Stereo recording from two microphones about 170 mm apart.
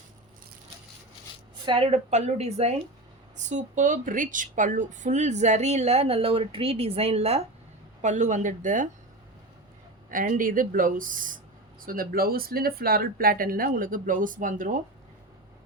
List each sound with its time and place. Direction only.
1.6 s a woman's voice: 35° right (ahead or behind)
10.1 s speech: 50° right (ahead or behind)